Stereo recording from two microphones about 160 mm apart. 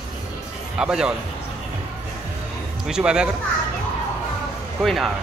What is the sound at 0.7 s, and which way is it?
Speech, 5° right (ahead or behind).